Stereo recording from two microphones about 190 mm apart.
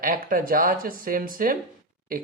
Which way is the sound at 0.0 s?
45° right (ahead or behind).